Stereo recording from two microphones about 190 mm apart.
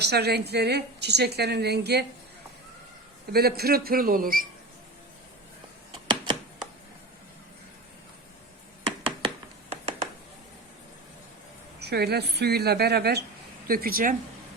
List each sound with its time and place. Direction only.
0.0 s a woman's voice: 60° right (ahead or behind)
3.3 s a man's voice: 55° right (ahead or behind)
6.1 s a sound: 25° right (ahead or behind)
9.0 s hands: 30° right (ahead or behind)
11.8 s a woman's voice: 60° right (ahead or behind)